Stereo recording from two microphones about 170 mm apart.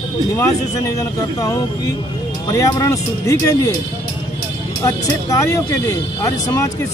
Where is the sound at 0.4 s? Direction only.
20° left (ahead or behind).